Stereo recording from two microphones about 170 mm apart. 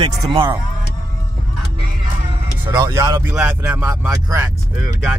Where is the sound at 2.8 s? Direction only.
15° right (ahead or behind).